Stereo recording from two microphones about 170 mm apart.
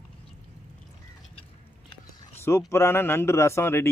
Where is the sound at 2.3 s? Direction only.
15° left (ahead or behind).